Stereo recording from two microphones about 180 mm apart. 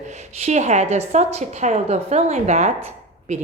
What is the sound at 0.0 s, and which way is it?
A woman's voice, 40° right (ahead or behind).